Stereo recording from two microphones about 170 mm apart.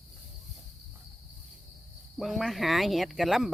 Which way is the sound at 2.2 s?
Centre (ahead or behind).